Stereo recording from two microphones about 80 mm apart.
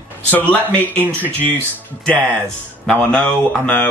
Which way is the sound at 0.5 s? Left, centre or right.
Left.